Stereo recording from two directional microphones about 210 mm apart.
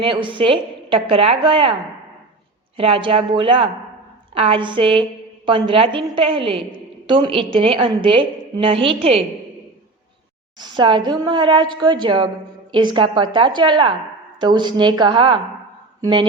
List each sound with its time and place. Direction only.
0.0 s a woman's voice: 25° right (ahead or behind)
2.7 s a woman's voice: 25° right (ahead or behind)
10.6 s a woman's voice: 20° right (ahead or behind)